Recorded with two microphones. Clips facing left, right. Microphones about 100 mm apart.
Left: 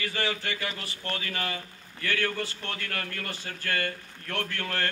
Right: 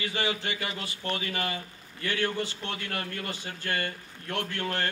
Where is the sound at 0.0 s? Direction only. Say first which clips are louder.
Even; 20° right (ahead or behind).